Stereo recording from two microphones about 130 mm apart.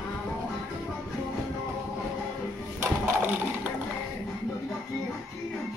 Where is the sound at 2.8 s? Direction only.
15° right (ahead or behind).